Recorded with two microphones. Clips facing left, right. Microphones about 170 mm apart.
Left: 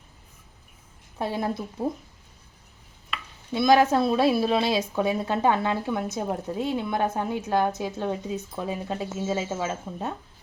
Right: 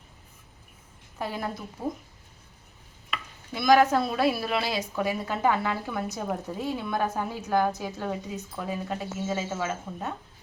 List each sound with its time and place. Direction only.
1.2 s a woman's voice: 25° left (ahead or behind)
3.5 s a woman's voice: 25° left (ahead or behind)